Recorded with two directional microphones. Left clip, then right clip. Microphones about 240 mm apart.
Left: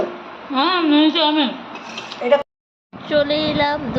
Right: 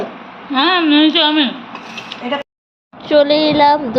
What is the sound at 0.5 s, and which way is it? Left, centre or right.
Speech, centre.